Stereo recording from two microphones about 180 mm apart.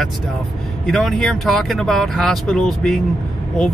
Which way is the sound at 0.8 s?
Centre (ahead or behind).